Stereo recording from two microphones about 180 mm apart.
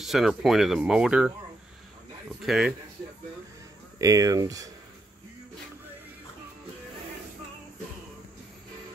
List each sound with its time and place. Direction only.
0.0 s speech: centre (ahead or behind)
2.4 s speech: centre (ahead or behind)
4.0 s speech: 20° right (ahead or behind)